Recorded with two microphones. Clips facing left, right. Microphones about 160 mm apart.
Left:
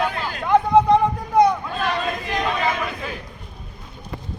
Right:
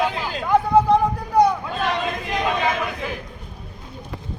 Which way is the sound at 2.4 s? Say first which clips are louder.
Right 1 dB; 10° right (ahead or behind).